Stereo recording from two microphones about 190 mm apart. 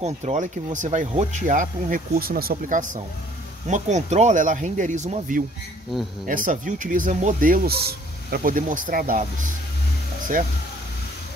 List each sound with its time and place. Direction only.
0.0 s speech: 35° right (ahead or behind)